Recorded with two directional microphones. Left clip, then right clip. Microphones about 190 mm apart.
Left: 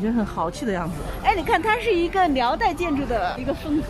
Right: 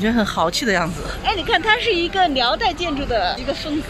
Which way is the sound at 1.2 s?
50° left (ahead or behind).